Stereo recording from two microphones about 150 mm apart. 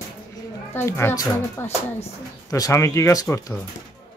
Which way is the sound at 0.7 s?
15° left (ahead or behind).